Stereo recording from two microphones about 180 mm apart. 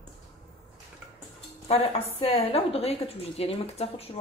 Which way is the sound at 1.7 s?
35° left (ahead or behind).